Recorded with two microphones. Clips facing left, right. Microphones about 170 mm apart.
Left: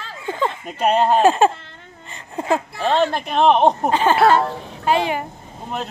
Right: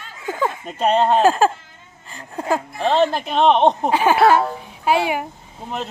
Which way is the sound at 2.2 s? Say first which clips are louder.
Left 1 dB; centre (ahead or behind).